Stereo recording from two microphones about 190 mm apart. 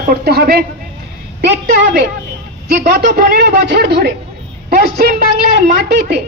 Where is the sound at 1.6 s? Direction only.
50° right (ahead or behind).